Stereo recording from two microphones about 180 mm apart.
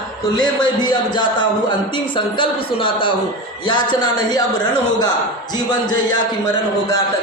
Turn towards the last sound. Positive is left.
turn(degrees=25)  # may be behind; listen again after turning